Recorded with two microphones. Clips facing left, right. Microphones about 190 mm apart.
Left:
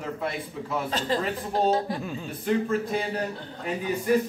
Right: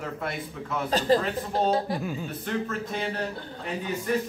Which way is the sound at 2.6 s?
10° left (ahead or behind).